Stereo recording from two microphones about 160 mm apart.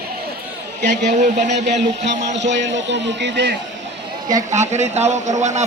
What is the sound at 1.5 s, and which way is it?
A man's voice, 90° right.